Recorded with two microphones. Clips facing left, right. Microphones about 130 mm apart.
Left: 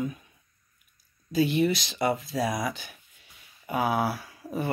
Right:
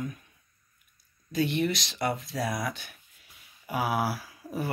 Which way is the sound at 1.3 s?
5° left (ahead or behind).